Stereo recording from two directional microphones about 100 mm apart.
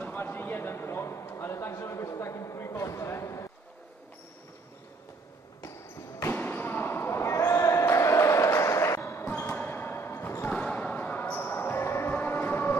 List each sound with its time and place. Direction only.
0.0 s a sound: 20° left (ahead or behind)
6.2 s basketball bounce: 20° left (ahead or behind)
10.5 s basketball bounce: 10° left (ahead or behind)